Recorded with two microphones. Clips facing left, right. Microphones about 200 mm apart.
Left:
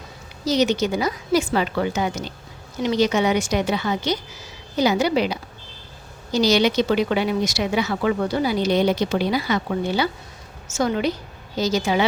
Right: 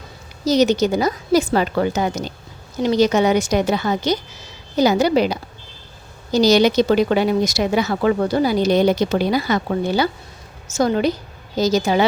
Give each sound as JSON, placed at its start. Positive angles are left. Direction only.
{"t": 0.4, "sound": "speech", "side_deg": -40}